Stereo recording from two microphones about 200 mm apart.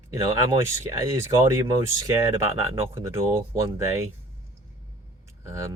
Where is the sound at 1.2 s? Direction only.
15° right (ahead or behind).